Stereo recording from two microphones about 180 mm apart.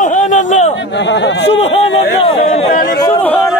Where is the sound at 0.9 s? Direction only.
75° left (ahead or behind).